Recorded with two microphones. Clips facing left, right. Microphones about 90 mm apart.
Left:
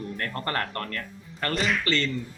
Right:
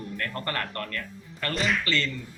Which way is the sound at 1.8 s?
30° left (ahead or behind).